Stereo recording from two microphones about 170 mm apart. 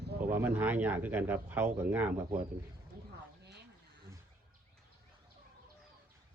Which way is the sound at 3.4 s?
75° right (ahead or behind).